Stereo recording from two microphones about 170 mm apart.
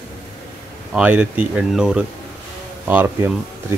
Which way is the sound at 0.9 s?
10° right (ahead or behind).